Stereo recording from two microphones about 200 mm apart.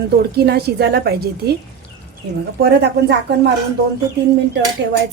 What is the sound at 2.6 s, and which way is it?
Speech, 55° right (ahead or behind).